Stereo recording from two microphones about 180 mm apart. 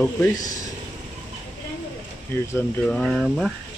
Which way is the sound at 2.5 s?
5° left (ahead or behind).